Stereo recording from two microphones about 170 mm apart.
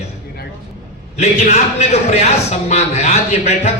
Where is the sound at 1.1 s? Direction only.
40° left (ahead or behind).